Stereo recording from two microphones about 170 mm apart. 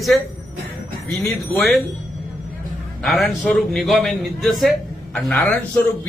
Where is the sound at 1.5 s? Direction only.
Centre (ahead or behind).